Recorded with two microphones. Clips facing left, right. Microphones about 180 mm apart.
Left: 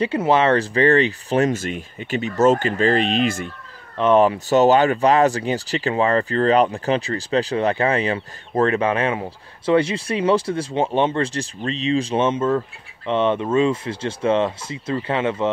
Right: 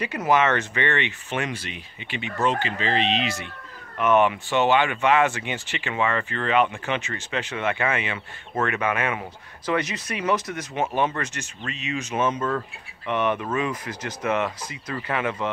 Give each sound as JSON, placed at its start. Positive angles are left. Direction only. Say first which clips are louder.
{"t": 0.0, "sound": "speech", "louder": "left 4 dB", "side_deg": 30}
{"t": 4.0, "sound": "speech", "louder": "left 4 dB", "side_deg": 35}